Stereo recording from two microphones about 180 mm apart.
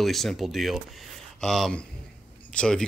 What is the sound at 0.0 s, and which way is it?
Speech, centre (ahead or behind).